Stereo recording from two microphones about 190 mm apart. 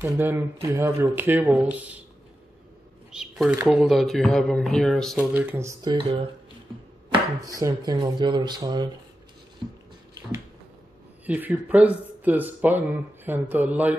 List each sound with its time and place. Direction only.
0.0 s speech: 10° right (ahead or behind)
3.1 s a sound: 5° right (ahead or behind)
3.6 s speech: 5° right (ahead or behind)
7.4 s speech: 20° right (ahead or behind)
11.2 s speech: 10° right (ahead or behind)